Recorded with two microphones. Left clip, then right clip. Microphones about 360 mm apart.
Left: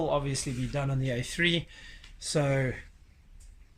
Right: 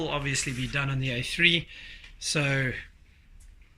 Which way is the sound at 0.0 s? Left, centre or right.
Centre.